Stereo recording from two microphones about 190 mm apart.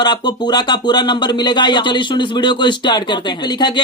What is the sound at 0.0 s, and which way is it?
Speech, 20° left (ahead or behind).